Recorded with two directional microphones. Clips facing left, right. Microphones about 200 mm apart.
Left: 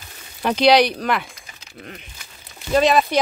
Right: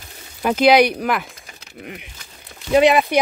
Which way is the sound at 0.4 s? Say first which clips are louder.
Right 1 dB; 5° right (ahead or behind).